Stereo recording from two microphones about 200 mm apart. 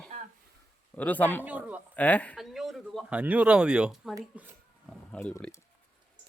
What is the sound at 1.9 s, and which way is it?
A man's voice, 10° left (ahead or behind).